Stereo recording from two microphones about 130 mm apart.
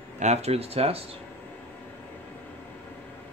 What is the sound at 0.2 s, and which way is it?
Speech, 55° right (ahead or behind).